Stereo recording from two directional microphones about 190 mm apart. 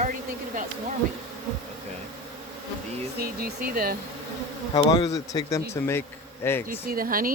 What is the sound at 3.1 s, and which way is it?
Speech, 50° right (ahead or behind).